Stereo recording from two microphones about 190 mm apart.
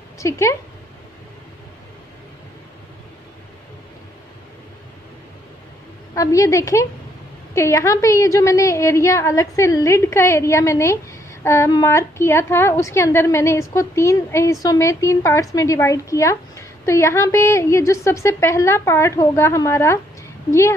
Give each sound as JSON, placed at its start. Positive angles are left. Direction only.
{"t": 0.2, "sound": "a woman's voice", "side_deg": 15}
{"t": 6.1, "sound": "a woman's voice", "side_deg": 20}